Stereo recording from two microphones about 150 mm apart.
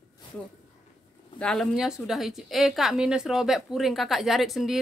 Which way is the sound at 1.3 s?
5° left (ahead or behind).